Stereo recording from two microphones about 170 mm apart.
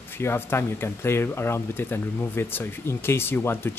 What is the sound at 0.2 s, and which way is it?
Speech, 15° left (ahead or behind).